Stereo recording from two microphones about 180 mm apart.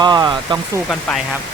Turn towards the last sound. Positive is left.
turn(degrees=-20)  # may be behind; listen again after turning